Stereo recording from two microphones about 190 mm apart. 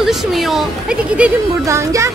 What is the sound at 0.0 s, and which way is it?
Speech, centre (ahead or behind).